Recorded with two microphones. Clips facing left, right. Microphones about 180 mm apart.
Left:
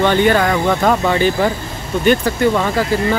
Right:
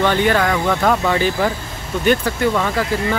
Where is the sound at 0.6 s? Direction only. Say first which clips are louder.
Left 2 dB; 15° left (ahead or behind).